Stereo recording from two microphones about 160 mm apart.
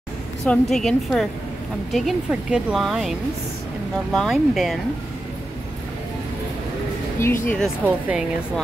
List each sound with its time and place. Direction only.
0.5 s speech: centre (ahead or behind)
7.2 s speech: 15° left (ahead or behind)
7.8 s speech: 10° right (ahead or behind)